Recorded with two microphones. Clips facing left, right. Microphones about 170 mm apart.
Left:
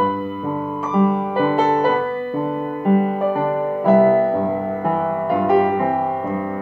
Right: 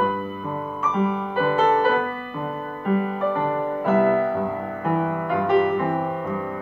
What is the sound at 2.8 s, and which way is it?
Music, 45° left (ahead or behind).